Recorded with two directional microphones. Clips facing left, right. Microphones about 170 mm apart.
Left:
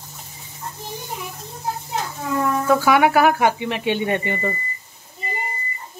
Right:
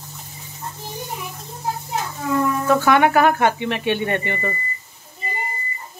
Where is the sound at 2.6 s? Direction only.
10° left (ahead or behind).